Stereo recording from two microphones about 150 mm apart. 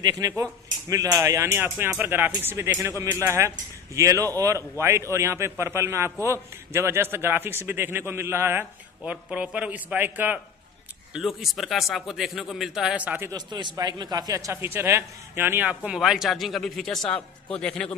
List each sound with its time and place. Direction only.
0.0 s a man's voice: 25° right (ahead or behind)
11.1 s speech: centre (ahead or behind)
13.3 s a man's voice: 30° right (ahead or behind); by 17.8 s 5° left (ahead or behind)